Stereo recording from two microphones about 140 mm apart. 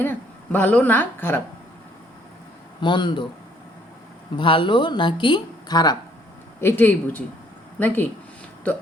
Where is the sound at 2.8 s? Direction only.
35° left (ahead or behind).